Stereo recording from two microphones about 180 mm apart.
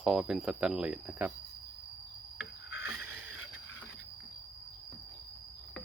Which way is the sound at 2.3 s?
75° left (ahead or behind).